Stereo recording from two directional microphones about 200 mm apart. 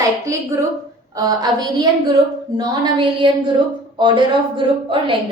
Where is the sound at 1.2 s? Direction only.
20° right (ahead or behind).